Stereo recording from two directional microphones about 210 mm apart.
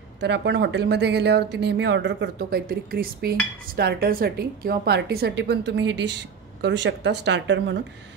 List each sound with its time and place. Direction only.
0.2 s a woman's voice: 55° right (ahead or behind)